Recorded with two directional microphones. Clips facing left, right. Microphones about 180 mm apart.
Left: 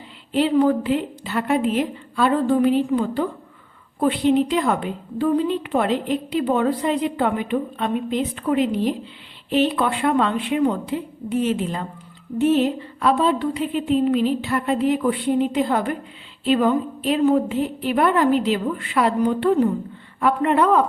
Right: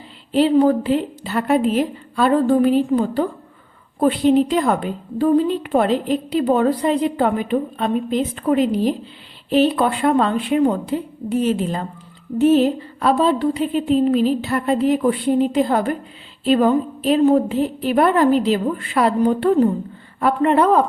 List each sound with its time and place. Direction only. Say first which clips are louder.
0.3 s a woman's voice: right 3 dB; 35° right (ahead or behind)